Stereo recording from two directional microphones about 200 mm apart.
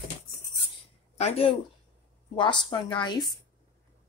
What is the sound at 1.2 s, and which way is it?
A woman's voice, 30° left (ahead or behind).